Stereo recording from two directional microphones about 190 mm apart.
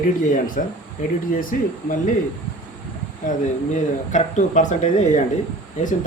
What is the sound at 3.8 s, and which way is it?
Speech, 40° left (ahead or behind).